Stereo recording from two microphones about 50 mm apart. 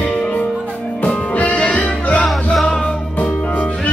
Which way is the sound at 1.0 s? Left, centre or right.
Left.